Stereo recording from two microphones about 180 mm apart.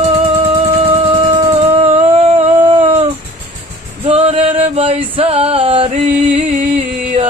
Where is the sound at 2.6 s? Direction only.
30° right (ahead or behind).